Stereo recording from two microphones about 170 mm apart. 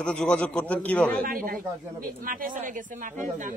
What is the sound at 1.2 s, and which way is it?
Speech, 55° right (ahead or behind).